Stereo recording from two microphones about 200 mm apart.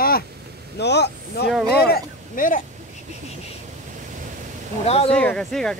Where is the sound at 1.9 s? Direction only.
45° left (ahead or behind).